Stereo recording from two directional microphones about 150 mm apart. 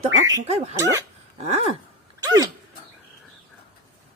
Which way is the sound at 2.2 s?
25° right (ahead or behind).